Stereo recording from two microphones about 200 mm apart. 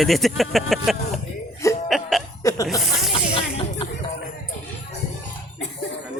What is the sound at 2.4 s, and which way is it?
Music, 20° left (ahead or behind).